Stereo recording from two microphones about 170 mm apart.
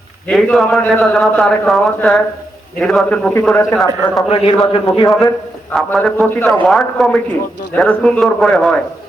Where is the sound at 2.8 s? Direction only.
Centre (ahead or behind).